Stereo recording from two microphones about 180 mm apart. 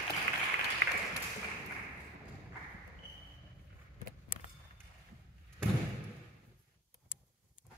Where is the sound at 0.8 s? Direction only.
85° right.